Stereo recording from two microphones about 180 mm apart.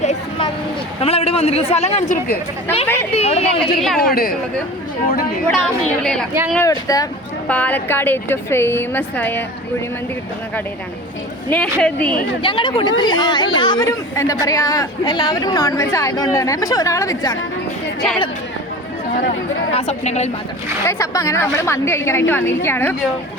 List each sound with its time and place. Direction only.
0.0 s a sound: 40° left (ahead or behind)
1.0 s speech: 35° left (ahead or behind)
2.8 s a woman's voice: 10° left (ahead or behind)
3.1 s speech: 35° left (ahead or behind)
3.6 s a woman's voice: centre (ahead or behind)
4.1 s a woman's voice: 55° left (ahead or behind)
5.5 s a woman's voice: centre (ahead or behind)
6.7 s a woman's voice: 20° left (ahead or behind)
7.4 s a woman's voice: 10° left (ahead or behind)
11.4 s a woman's voice: 5° left (ahead or behind)
12.4 s a woman's voice: 30° left (ahead or behind)
19.7 s speech: 40° left (ahead or behind)
20.8 s a woman's voice: 15° left (ahead or behind)